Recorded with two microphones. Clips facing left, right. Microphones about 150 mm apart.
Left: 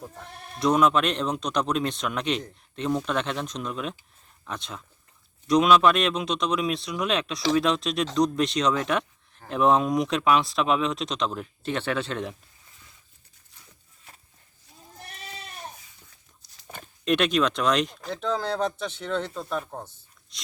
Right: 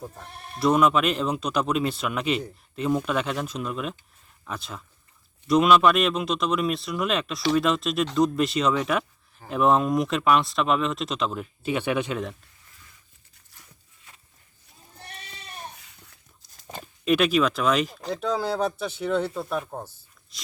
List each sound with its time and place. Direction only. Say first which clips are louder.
0.0 s speech: right 1 dB; 5° right (ahead or behind)
15.8 s a sound: right 3 dB; 70° right (ahead or behind)
17.1 s speech: right 2 dB; 5° right (ahead or behind)